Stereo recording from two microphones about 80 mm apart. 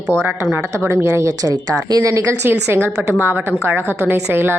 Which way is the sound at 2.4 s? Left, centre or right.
Right.